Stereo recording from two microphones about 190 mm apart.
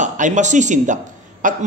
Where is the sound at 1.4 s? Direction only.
45° right (ahead or behind).